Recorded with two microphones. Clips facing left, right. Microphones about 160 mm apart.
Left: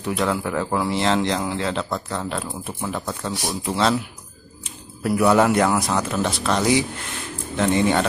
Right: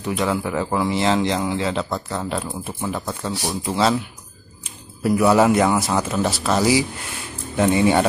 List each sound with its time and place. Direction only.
0.0 s speech: centre (ahead or behind)
5.0 s speech: centre (ahead or behind)